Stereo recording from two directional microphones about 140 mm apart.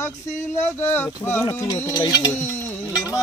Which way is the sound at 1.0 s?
15° left (ahead or behind).